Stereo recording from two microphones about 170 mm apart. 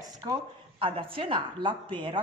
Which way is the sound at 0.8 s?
30° right (ahead or behind).